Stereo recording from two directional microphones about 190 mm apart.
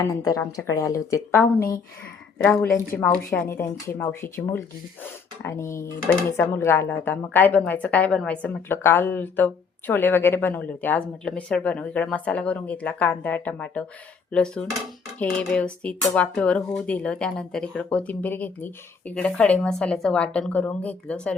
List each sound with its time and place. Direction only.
0.0 s speech: 20° left (ahead or behind)
2.4 s speech: 5° left (ahead or behind)
14.3 s a sound: 5° left (ahead or behind)
16.1 s speech: 5° left (ahead or behind)